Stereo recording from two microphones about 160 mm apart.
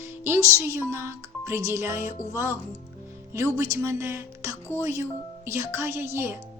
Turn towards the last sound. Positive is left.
turn(degrees=-15)  # may be behind; listen again after turning